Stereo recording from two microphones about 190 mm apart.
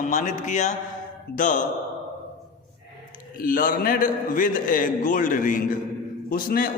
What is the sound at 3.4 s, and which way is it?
A man's voice, 45° left (ahead or behind).